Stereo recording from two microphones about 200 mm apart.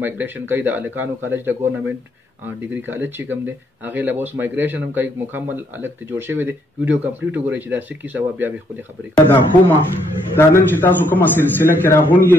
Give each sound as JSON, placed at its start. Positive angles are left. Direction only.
{"t": 0.0, "sound": "speech", "side_deg": -10}
{"t": 9.1, "sound": "a man's voice", "side_deg": 15}